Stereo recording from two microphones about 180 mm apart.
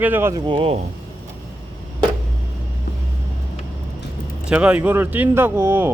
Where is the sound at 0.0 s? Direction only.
10° right (ahead or behind); by 0.8 s 30° right (ahead or behind).